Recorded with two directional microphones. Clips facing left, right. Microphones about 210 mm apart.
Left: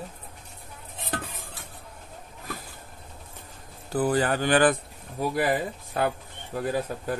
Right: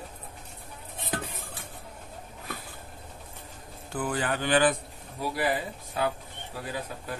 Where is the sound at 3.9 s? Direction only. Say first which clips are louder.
Left 6 dB; 35° left (ahead or behind).